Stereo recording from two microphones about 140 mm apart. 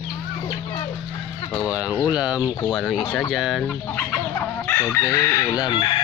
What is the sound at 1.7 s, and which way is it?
Speech, 5° right (ahead or behind).